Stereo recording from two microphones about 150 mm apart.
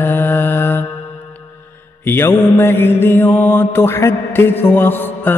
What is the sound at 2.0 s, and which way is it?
Mantra, 15° left (ahead or behind).